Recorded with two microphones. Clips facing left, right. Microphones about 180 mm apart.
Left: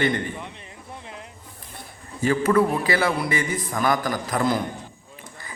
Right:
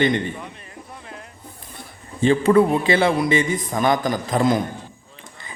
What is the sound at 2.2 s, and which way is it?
A man's voice, 25° right (ahead or behind).